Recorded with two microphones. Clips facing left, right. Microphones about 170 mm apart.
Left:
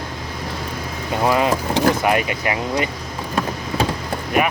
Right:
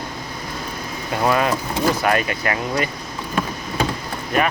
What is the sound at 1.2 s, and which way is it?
Speech, 20° left (ahead or behind).